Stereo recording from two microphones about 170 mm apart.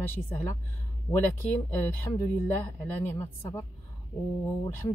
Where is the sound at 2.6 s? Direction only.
15° left (ahead or behind).